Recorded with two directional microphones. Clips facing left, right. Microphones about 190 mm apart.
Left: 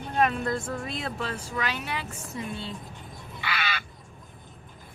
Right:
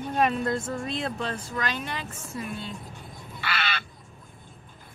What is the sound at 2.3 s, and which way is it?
Speech, 25° left (ahead or behind).